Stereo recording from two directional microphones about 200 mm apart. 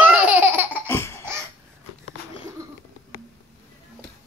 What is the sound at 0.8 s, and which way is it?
Laughter, 10° left (ahead or behind).